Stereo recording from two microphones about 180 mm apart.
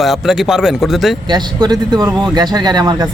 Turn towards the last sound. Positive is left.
turn(degrees=-20)  # may be behind; listen again after turning